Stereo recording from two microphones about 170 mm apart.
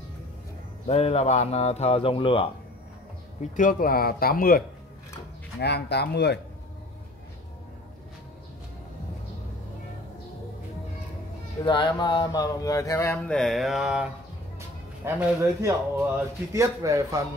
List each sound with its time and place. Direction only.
0.8 s speech: 40° left (ahead or behind)
3.5 s speech: 55° left (ahead or behind)
5.6 s speech: 75° left (ahead or behind)
11.6 s speech: 25° left (ahead or behind)
13.4 s mantra: centre (ahead or behind)
15.0 s a man's voice: 15° right (ahead or behind)